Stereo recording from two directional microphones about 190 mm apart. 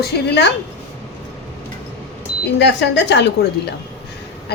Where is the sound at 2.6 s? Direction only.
65° left (ahead or behind).